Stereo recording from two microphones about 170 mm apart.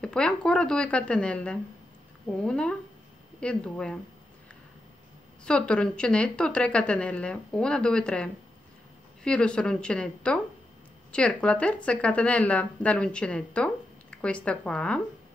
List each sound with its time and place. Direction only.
0.0 s speech: 5° left (ahead or behind)
5.4 s speech: 5° left (ahead or behind)